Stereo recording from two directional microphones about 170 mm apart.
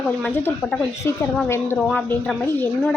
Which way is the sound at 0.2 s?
10° left (ahead or behind).